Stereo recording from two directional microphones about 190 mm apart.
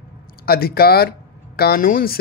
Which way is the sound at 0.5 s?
55° left (ahead or behind).